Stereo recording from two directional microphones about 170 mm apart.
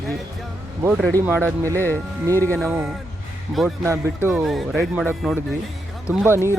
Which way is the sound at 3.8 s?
15° right (ahead or behind).